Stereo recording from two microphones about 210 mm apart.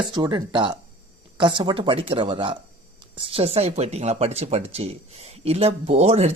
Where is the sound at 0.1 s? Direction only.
20° right (ahead or behind).